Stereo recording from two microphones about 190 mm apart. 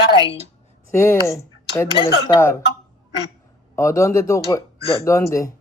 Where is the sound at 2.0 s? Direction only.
25° left (ahead or behind).